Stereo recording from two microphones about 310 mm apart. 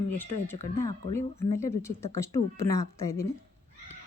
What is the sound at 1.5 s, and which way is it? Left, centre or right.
A woman's voice, centre.